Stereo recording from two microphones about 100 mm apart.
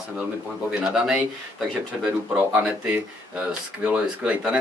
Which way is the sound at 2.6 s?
15° right (ahead or behind).